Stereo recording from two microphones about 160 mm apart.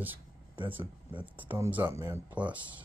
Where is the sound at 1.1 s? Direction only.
30° right (ahead or behind).